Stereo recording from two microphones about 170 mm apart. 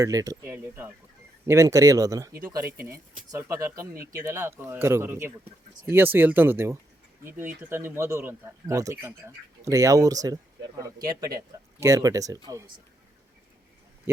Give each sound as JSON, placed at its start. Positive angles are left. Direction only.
{"t": 0.0, "sound": "speech", "side_deg": -20}